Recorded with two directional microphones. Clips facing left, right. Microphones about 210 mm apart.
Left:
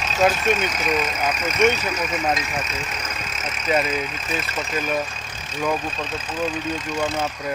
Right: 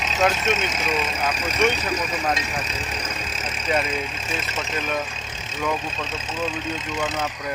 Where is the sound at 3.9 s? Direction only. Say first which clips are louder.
Left 2 dB; 30° right (ahead or behind).